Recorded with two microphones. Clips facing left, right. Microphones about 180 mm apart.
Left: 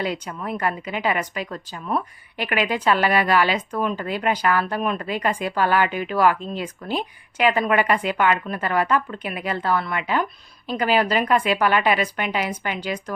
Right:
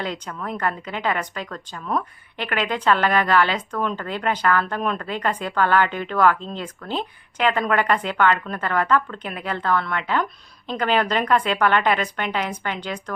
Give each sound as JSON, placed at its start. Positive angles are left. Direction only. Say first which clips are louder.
{"t": 0.0, "sound": "speech", "louder": "left 2 dB", "side_deg": 10}